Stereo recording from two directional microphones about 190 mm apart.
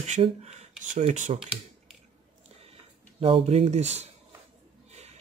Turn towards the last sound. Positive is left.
turn(degrees=-35)  # may be behind; listen again after turning